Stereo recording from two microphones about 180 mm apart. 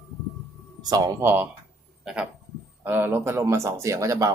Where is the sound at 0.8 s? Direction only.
20° right (ahead or behind).